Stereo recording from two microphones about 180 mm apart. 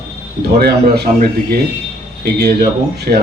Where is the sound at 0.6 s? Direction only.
60° right (ahead or behind).